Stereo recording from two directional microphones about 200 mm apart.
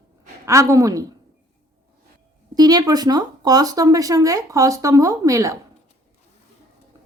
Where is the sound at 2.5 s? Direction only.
20° right (ahead or behind).